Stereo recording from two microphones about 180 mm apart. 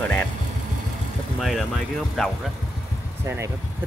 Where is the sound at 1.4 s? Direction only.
Centre (ahead or behind).